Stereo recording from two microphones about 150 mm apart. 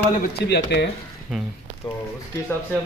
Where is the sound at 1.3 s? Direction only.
Centre (ahead or behind).